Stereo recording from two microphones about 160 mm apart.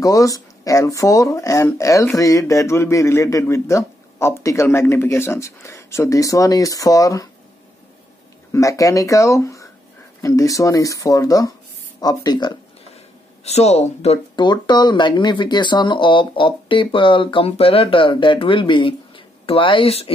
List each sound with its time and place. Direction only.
0.0 s a man's voice: 20° left (ahead or behind)
8.5 s a man's voice: 20° left (ahead or behind)
13.4 s speech: 40° left (ahead or behind)
14.3 s speech: 30° left (ahead or behind)